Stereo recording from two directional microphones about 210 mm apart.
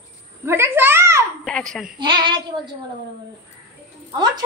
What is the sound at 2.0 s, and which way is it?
Speech, 20° right (ahead or behind).